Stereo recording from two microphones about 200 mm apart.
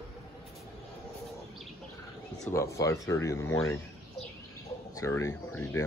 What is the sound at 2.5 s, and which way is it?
Speech, 15° left (ahead or behind).